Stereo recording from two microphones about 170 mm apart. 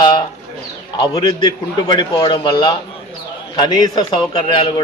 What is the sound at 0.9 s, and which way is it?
A man's voice, 25° left (ahead or behind).